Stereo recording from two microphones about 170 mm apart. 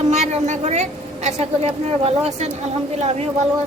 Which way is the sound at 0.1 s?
40° right (ahead or behind).